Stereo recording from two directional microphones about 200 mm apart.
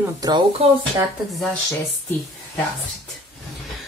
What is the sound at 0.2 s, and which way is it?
Speech, 25° right (ahead or behind).